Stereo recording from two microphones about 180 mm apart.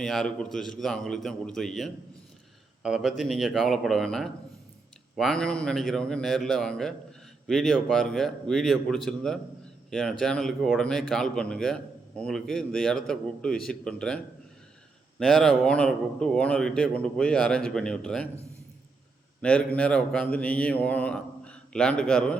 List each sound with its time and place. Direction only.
0.0 s a man's voice: centre (ahead or behind)
15.2 s a man's voice: 5° left (ahead or behind)
19.4 s a man's voice: 5° left (ahead or behind)